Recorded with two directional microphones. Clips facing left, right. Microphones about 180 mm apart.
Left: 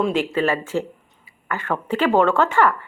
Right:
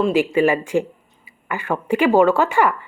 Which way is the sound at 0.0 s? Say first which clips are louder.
Right 4 dB; 10° right (ahead or behind).